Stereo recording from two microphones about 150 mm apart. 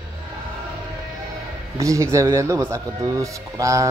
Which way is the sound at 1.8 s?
20° right (ahead or behind).